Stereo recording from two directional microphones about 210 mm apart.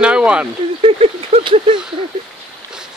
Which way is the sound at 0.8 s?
30° right (ahead or behind).